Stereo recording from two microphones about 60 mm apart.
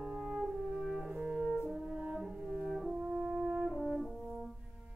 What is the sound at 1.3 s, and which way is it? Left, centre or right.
French horn, centre.